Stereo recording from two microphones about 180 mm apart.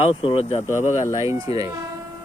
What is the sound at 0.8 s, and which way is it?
Speech, 40° left (ahead or behind).